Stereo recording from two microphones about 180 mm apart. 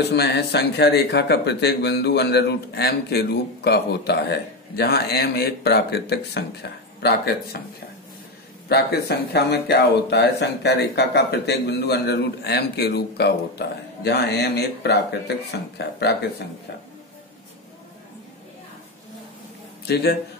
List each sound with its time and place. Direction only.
0.1 s speech: 65° left (ahead or behind)
8.6 s speech: 65° left (ahead or behind)
19.9 s speech: 60° left (ahead or behind)